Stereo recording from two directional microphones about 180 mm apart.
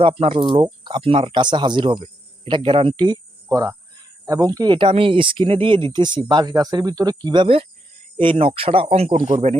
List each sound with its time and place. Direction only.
0.0 s speech: 30° right (ahead or behind)